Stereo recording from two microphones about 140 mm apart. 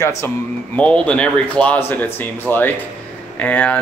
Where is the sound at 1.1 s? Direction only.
10° left (ahead or behind).